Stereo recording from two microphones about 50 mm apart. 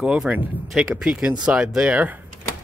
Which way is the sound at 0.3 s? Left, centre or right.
Right.